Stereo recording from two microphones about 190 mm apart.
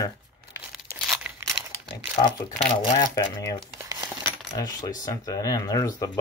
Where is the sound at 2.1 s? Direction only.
25° left (ahead or behind).